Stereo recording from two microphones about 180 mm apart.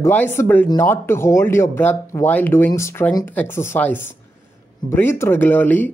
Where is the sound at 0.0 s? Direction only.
10° left (ahead or behind).